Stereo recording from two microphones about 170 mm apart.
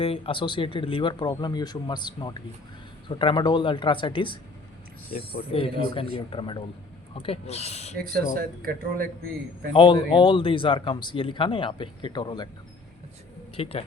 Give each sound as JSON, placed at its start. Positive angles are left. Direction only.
{"t": 0.0, "sound": "speech", "side_deg": 35}
{"t": 5.5, "sound": "speech", "side_deg": 35}
{"t": 7.9, "sound": "speech", "side_deg": -60}
{"t": 9.7, "sound": "speech", "side_deg": 25}
{"t": 13.6, "sound": "speech", "side_deg": 35}